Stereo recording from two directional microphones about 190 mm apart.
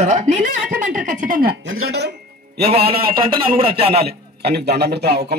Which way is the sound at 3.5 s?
30° right (ahead or behind).